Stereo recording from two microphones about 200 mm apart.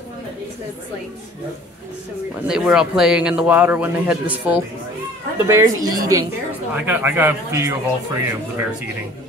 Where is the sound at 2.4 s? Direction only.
5° right (ahead or behind).